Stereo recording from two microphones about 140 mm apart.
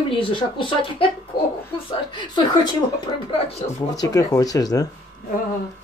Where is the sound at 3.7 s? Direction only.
25° left (ahead or behind).